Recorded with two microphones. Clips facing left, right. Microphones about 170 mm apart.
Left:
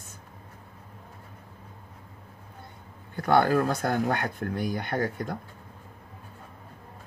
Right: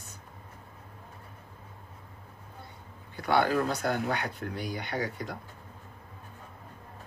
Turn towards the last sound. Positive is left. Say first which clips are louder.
# left 4 dB
turn(degrees=50)  # may be behind; listen again after turning